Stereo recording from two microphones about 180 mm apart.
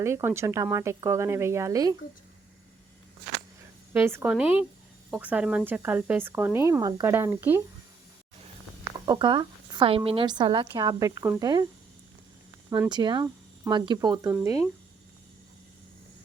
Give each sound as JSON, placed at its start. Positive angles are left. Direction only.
{"t": 0.0, "sound": "speech", "side_deg": -15}
{"t": 3.9, "sound": "speech", "side_deg": -10}
{"t": 9.0, "sound": "a woman's voice", "side_deg": -25}
{"t": 12.7, "sound": "a woman's voice", "side_deg": -20}